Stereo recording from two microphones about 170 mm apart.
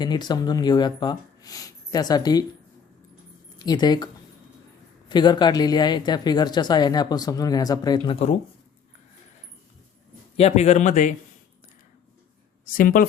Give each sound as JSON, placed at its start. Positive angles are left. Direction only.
{"t": 0.0, "sound": "speech", "side_deg": 25}
{"t": 3.6, "sound": "speech", "side_deg": 25}
{"t": 10.3, "sound": "speech", "side_deg": 40}
{"t": 12.7, "sound": "a woman's voice", "side_deg": 55}